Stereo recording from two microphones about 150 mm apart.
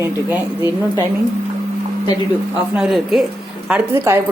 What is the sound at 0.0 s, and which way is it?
Speech, 15° right (ahead or behind).